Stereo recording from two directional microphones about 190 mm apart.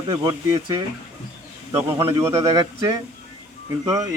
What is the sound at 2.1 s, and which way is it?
Speech, 15° right (ahead or behind).